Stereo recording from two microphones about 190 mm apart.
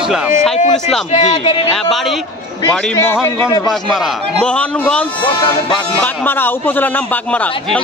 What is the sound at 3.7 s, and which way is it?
A man's voice, centre (ahead or behind).